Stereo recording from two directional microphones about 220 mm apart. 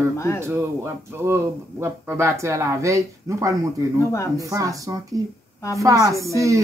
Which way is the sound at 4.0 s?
10° left (ahead or behind).